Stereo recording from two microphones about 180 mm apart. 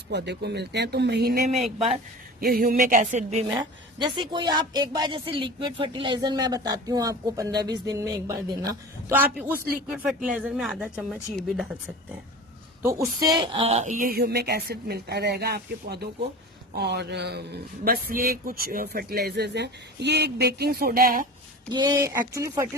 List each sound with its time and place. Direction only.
0.1 s speech: 70° right (ahead or behind)
2.4 s a sound: 55° right (ahead or behind); by 3.4 s 40° right (ahead or behind)
3.5 s a woman's voice: 25° right (ahead or behind); by 11.7 s centre (ahead or behind)
12.8 s a woman's voice: 15° right (ahead or behind); by 13.9 s 35° right (ahead or behind)
13.9 s speech: 50° right (ahead or behind); by 17.4 s 65° right (ahead or behind)
17.8 s speech: 55° right (ahead or behind)
21.7 s a woman's voice: 25° right (ahead or behind)